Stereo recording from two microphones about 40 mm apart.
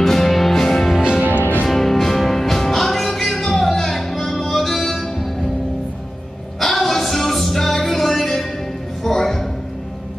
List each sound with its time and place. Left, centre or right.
0.0 s music: centre
0.9 s music: centre
1.7 s music: centre
6.6 s music: centre